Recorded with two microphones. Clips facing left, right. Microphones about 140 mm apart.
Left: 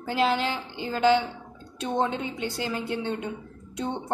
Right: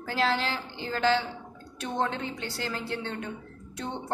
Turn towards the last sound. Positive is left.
turn(degrees=20)  # may be behind; listen again after turning